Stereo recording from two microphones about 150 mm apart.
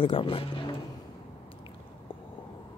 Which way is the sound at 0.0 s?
35° left (ahead or behind).